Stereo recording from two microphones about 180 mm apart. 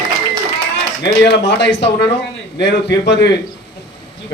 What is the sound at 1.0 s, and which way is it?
A man's voice, 75° left (ahead or behind).